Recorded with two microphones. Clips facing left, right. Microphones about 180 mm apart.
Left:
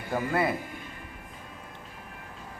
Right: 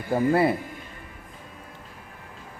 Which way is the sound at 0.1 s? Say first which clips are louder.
Right 6 dB; 30° right (ahead or behind).